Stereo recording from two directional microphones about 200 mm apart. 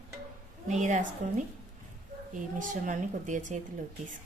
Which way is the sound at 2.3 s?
40° right (ahead or behind).